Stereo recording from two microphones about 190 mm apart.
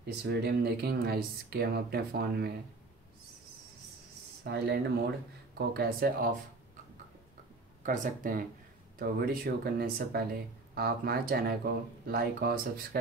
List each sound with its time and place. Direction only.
0.0 s speech: 60° right (ahead or behind)
4.5 s speech: 60° right (ahead or behind)
7.8 s speech: 45° right (ahead or behind)